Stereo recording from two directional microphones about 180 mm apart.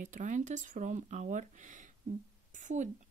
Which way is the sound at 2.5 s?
45° right (ahead or behind).